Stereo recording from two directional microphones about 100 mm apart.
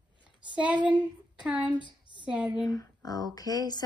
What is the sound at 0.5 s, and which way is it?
A woman's voice, 15° right (ahead or behind).